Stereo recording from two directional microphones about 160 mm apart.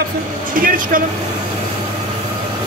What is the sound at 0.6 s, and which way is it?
Speech, 60° right (ahead or behind).